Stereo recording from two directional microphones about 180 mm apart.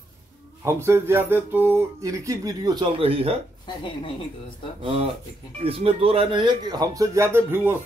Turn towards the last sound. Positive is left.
turn(degrees=-15)  # may be behind; listen again after turning